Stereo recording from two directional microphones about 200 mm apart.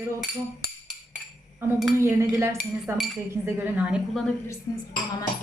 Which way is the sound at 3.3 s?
10° right (ahead or behind).